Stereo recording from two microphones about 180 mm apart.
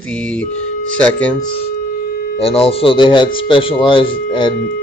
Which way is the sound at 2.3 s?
30° left (ahead or behind).